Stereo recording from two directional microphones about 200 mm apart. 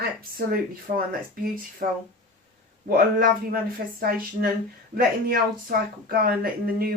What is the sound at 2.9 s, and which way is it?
Speech, 45° right (ahead or behind).